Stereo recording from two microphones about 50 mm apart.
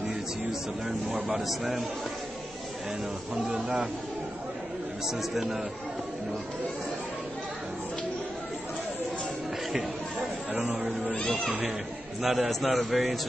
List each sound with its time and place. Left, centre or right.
0.1 s music: centre
1.2 s a man's voice: centre
3.4 s a man's voice: centre
5.0 s a man's voice: centre
10.6 s speech: centre
11.1 s speech: left
12.2 s a man's voice: centre